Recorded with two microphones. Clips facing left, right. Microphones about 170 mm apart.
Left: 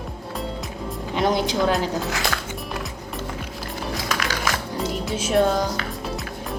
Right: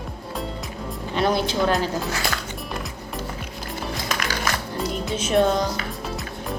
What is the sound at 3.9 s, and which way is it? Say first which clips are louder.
Music: left 2 dB; centre (ahead or behind).